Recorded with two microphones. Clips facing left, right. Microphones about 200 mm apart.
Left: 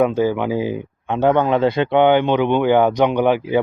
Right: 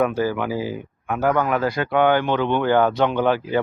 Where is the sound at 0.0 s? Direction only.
20° left (ahead or behind).